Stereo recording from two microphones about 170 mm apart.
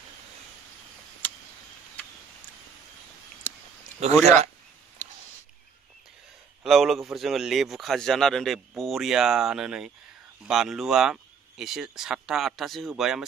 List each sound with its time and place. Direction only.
4.0 s speech: 40° right (ahead or behind)
5.0 s a sound: 15° left (ahead or behind)
6.6 s a man's voice: centre (ahead or behind)